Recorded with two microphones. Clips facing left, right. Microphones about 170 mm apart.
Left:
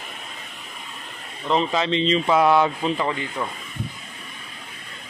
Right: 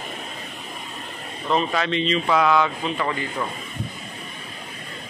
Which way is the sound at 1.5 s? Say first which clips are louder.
Left 1 dB; 25° left (ahead or behind).